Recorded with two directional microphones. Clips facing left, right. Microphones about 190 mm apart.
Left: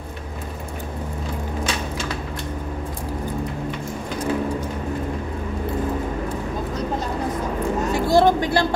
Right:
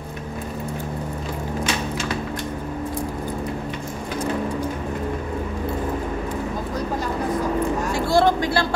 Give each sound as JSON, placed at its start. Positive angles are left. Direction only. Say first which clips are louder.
{"t": 7.9, "sound": "vehicle", "louder": "left 2 dB", "side_deg": 15}